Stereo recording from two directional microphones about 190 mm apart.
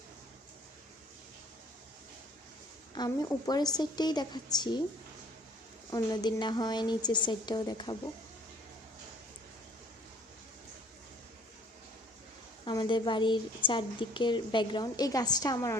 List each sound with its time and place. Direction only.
2.9 s a woman's voice: 20° left (ahead or behind)
5.9 s a woman's voice: 20° left (ahead or behind)
12.6 s a woman's voice: 25° left (ahead or behind)